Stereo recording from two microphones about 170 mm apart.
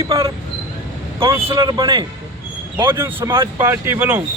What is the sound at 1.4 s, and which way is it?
Speech, 25° right (ahead or behind).